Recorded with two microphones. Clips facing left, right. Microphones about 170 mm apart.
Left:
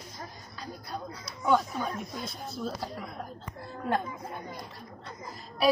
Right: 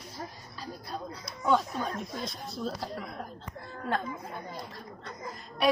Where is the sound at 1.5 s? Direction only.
Centre (ahead or behind).